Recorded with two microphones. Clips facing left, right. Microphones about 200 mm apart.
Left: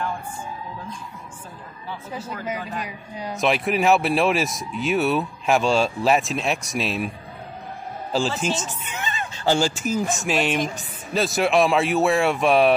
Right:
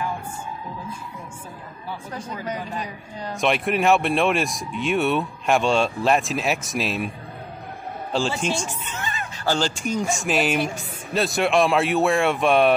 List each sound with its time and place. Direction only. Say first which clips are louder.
2.4 s a man's voice: even; 10° left (ahead or behind)
8.1 s speech: left 1 dB; 5° left (ahead or behind)
8.5 s speech: even; 10° right (ahead or behind)
8.8 s music: left 1 dB; 20° left (ahead or behind)
9.6 s speech: left 2 dB; 5° left (ahead or behind)